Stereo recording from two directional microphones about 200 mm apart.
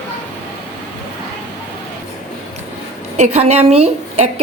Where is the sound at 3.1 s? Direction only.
35° right (ahead or behind).